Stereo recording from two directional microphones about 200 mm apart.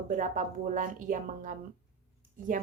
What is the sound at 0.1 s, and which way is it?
Speech, 40° right (ahead or behind).